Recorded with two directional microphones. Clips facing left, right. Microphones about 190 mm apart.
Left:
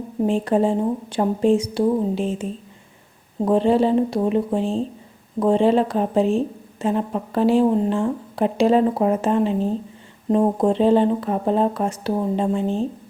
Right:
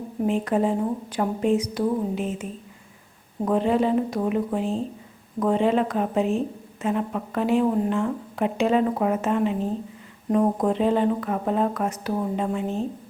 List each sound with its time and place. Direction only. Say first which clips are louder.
0.3 s speech: left 3 dB; 30° left (ahead or behind)